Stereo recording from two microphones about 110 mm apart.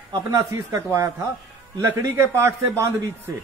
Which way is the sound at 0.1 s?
30° right (ahead or behind).